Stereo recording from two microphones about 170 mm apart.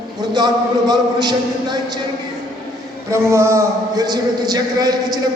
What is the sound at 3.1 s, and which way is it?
Speech, 15° right (ahead or behind).